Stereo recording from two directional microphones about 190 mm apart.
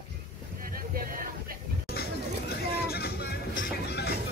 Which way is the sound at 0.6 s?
50° right (ahead or behind).